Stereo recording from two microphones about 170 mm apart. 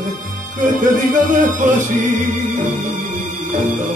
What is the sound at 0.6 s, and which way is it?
Music, 50° right (ahead or behind).